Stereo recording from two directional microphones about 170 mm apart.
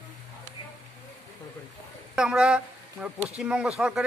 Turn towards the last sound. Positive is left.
turn(degrees=-5)  # may be behind; listen again after turning